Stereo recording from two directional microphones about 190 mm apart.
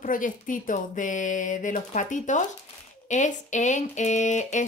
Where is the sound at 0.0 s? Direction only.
45° left (ahead or behind).